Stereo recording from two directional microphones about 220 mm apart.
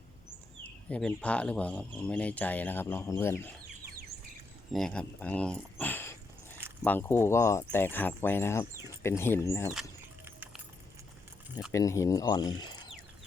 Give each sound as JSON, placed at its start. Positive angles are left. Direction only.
{"t": 0.9, "sound": "speech", "side_deg": 5}
{"t": 4.7, "sound": "speech", "side_deg": 5}
{"t": 11.7, "sound": "speech", "side_deg": 15}